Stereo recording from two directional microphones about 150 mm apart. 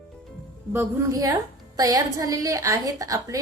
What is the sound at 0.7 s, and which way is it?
A woman's voice, 20° right (ahead or behind).